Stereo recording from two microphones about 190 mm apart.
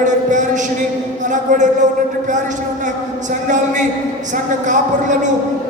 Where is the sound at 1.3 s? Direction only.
40° right (ahead or behind).